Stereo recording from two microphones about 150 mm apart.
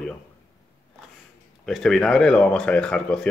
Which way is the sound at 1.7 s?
5° left (ahead or behind).